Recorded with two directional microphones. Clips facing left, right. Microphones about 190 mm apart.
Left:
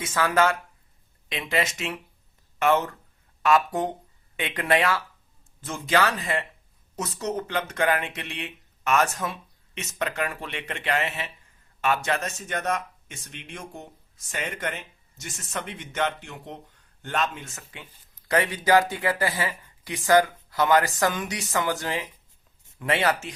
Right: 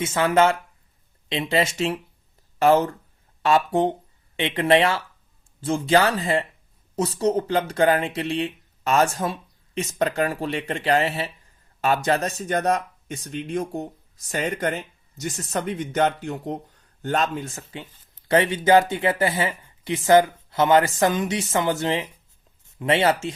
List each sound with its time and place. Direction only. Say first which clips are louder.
0.0 s speech: right 4 dB; 25° right (ahead or behind)